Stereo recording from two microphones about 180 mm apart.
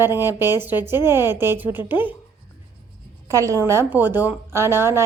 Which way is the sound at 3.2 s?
15° right (ahead or behind).